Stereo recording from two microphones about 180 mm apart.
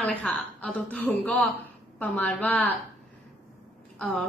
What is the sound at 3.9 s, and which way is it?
Speech, centre (ahead or behind).